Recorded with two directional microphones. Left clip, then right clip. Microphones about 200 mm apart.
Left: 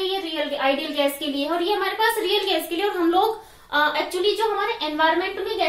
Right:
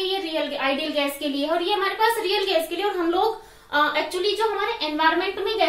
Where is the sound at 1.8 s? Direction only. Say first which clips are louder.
Even; 20° left (ahead or behind).